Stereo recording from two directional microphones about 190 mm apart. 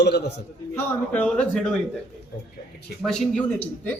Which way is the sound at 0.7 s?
10° left (ahead or behind).